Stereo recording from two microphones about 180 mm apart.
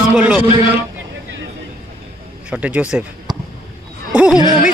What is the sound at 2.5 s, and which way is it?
Speech, 10° right (ahead or behind).